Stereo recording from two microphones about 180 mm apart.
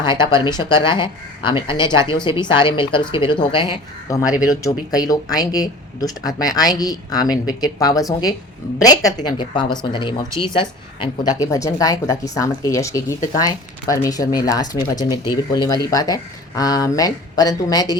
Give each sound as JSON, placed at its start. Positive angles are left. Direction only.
{"t": 0.0, "sound": "speech", "side_deg": 25}